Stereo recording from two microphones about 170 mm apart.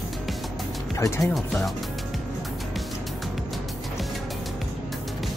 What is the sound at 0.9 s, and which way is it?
Speech, 15° left (ahead or behind).